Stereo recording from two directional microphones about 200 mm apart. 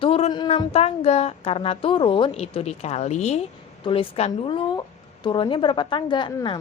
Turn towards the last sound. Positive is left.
turn(degrees=25)  # may be behind; listen again after turning